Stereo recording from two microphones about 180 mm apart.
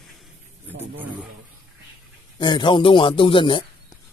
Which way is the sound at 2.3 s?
25° left (ahead or behind).